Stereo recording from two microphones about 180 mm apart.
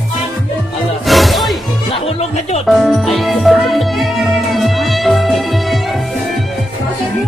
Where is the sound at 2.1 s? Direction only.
40° left (ahead or behind).